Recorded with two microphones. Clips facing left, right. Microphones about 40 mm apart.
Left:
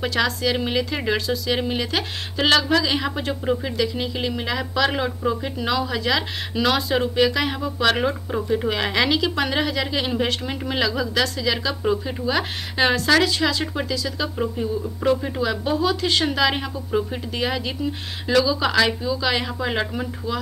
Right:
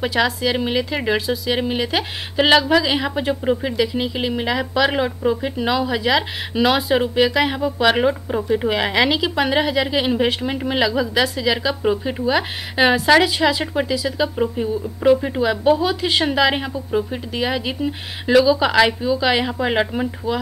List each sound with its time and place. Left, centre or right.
0.0 s speech: centre